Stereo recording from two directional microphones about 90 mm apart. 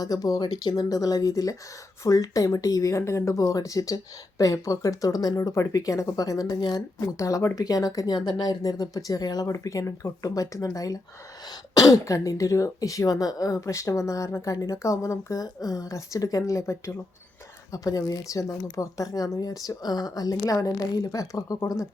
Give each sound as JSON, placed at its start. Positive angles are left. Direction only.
{"t": 0.0, "sound": "speech", "side_deg": 45}
{"t": 7.0, "sound": "speech", "side_deg": 35}